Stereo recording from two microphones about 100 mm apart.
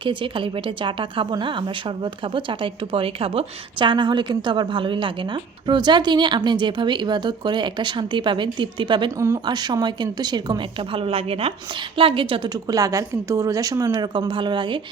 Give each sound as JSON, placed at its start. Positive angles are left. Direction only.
{"t": 0.0, "sound": "speech", "side_deg": -60}
{"t": 9.1, "sound": "speech", "side_deg": -30}
{"t": 9.4, "sound": "speech", "side_deg": -45}
{"t": 10.6, "sound": "a woman's voice", "side_deg": -60}
{"t": 11.8, "sound": "a woman's voice", "side_deg": -65}
{"t": 12.6, "sound": "a woman's voice", "side_deg": -35}
{"t": 14.0, "sound": "speech", "side_deg": -50}